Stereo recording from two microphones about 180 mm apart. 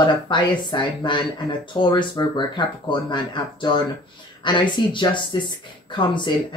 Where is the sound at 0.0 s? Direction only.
25° left (ahead or behind).